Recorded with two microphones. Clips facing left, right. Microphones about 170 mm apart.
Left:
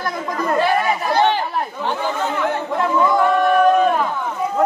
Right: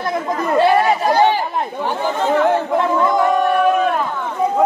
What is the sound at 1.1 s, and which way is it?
Chatter, 15° right (ahead or behind).